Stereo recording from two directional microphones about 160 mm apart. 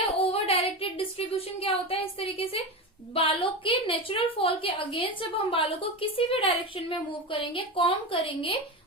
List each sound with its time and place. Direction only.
0.2 s child singing: 35° left (ahead or behind)
1.6 s a woman's voice: 35° left (ahead or behind)